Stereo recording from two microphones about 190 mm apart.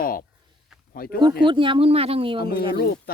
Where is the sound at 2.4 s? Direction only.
55° left (ahead or behind).